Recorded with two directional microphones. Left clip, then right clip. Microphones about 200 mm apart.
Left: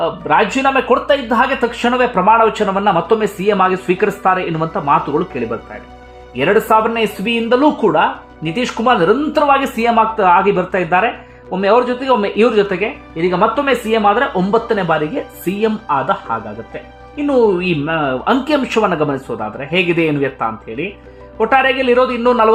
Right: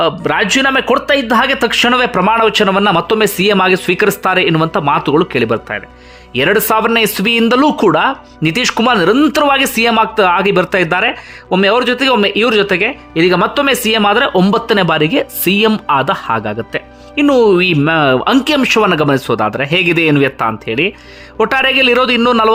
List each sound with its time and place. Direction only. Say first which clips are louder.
0.0 s speech: right 1 dB; 30° right (ahead or behind)